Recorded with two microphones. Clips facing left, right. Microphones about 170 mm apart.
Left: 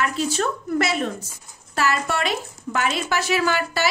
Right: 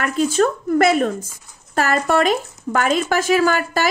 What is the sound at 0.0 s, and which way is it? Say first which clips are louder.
A woman's voice: right 6 dB; 50° right (ahead or behind).